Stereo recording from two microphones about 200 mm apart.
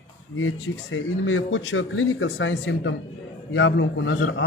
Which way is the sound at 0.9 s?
80° left.